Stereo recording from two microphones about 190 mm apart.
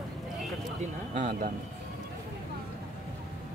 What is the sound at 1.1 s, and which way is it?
Speech, 40° right (ahead or behind).